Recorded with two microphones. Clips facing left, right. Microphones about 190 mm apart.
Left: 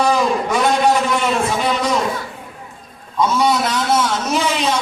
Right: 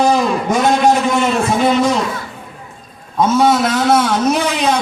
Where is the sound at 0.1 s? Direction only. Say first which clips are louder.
Right 2 dB; 45° right (ahead or behind).